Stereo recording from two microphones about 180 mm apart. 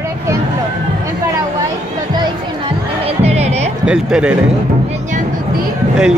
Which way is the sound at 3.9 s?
5° right (ahead or behind).